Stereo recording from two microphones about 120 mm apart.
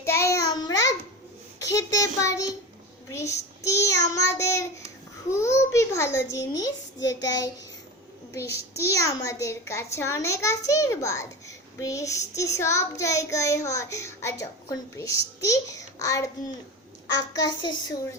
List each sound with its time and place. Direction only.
0.0 s child singing: 25° left (ahead or behind)
1.5 s a child's voice: 30° left (ahead or behind)
17.2 s a woman's voice: 40° left (ahead or behind)